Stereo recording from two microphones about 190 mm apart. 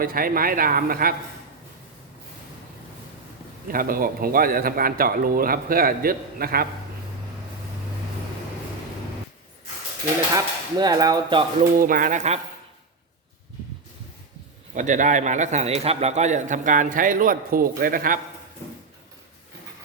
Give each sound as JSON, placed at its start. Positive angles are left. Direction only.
{"t": 0.0, "sound": "a man's voice", "side_deg": -50}
{"t": 3.7, "sound": "a man's voice", "side_deg": -50}
{"t": 10.3, "sound": "speech", "side_deg": -20}
{"t": 11.8, "sound": "a man's voice", "side_deg": -45}
{"t": 14.8, "sound": "a man's voice", "side_deg": -40}